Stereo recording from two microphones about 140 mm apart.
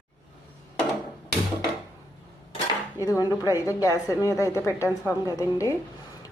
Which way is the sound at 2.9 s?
25° left (ahead or behind).